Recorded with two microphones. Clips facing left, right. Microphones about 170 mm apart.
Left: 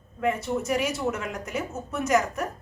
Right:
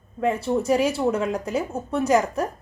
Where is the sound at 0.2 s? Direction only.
30° right (ahead or behind).